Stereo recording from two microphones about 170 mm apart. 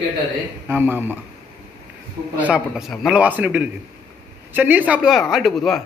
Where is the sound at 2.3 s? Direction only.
5° right (ahead or behind).